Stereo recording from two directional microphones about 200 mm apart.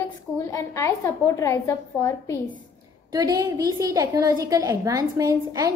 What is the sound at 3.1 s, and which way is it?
A woman's voice, 20° right (ahead or behind).